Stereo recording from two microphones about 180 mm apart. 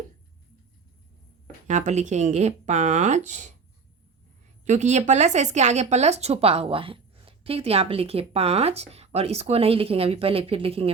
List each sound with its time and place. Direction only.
1.6 s speech: 40° right (ahead or behind)
4.6 s speech: 40° right (ahead or behind)